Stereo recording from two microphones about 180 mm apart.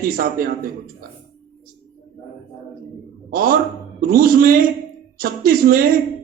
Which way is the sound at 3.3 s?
55° right (ahead or behind).